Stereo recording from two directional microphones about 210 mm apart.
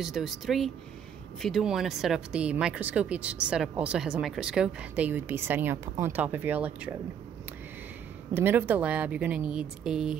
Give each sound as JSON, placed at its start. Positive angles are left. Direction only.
{"t": 0.0, "sound": "speech", "side_deg": 0}
{"t": 8.4, "sound": "speech", "side_deg": -10}